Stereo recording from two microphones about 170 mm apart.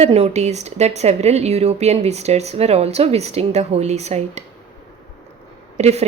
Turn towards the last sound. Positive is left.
turn(degrees=-40)  # may be behind; listen again after turning